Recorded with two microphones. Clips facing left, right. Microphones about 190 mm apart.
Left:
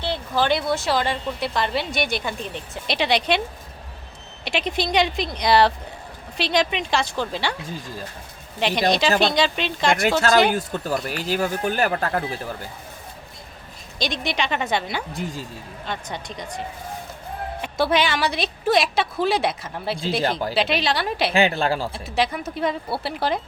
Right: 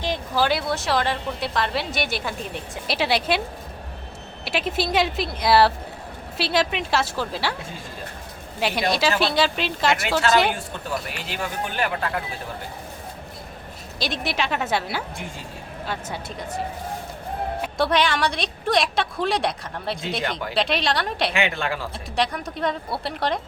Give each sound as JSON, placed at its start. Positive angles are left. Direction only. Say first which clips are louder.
{"t": 0.0, "sound": "a woman's voice", "louder": "even", "side_deg": -10}
{"t": 4.4, "sound": "a woman's voice", "louder": "even", "side_deg": -5}
{"t": 8.5, "sound": "a woman's voice", "louder": "left 3 dB", "side_deg": -5}
{"t": 10.2, "sound": "speech", "louder": "left 1 dB", "side_deg": 40}
{"t": 14.0, "sound": "a woman's voice", "louder": "left 1 dB", "side_deg": -5}
{"t": 17.6, "sound": "a woman's voice", "louder": "left 1 dB", "side_deg": 0}
{"t": 21.3, "sound": "speech", "louder": "left 5 dB", "side_deg": 35}
{"t": 22.1, "sound": "a woman's voice", "louder": "left 1 dB", "side_deg": 5}